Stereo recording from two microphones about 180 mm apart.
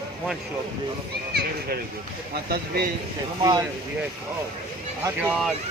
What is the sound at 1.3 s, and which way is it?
Speech, 65° right (ahead or behind).